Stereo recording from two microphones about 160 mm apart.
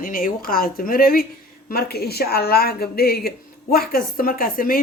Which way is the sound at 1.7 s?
75° left (ahead or behind).